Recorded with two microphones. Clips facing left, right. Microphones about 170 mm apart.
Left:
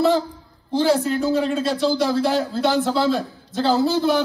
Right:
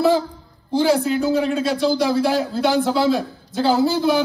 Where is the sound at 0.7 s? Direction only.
10° right (ahead or behind).